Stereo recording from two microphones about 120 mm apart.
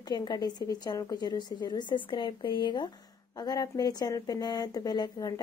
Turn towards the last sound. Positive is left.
turn(degrees=35)  # may be behind; listen again after turning